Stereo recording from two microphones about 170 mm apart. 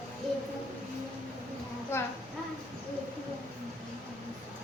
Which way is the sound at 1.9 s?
15° left (ahead or behind).